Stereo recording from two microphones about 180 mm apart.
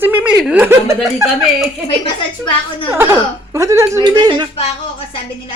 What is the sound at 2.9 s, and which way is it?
A woman's voice, 15° right (ahead or behind).